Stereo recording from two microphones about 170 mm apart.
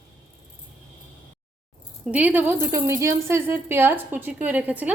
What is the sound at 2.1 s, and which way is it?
A woman's voice, 10° right (ahead or behind).